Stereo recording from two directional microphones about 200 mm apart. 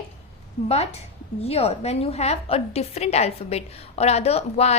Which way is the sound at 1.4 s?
30° left (ahead or behind).